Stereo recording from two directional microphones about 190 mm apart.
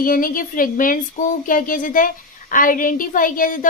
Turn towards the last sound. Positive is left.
turn(degrees=45)  # may be behind; listen again after turning